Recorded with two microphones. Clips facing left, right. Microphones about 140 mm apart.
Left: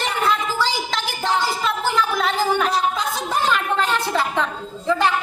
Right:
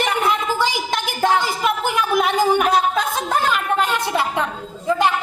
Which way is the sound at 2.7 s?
55° right (ahead or behind).